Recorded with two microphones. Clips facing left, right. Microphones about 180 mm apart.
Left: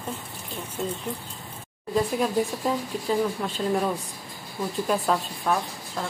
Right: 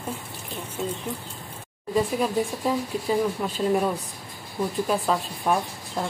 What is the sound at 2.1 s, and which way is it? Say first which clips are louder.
Speech: even; 5° right (ahead or behind).